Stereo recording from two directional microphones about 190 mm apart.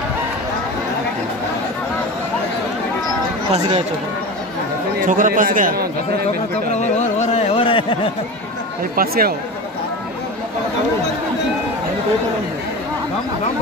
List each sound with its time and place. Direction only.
3.5 s speech: 30° right (ahead or behind)
5.0 s a man's voice: 45° right (ahead or behind)
6.7 s speech: 35° left (ahead or behind)
8.9 s a man's voice: 50° right (ahead or behind)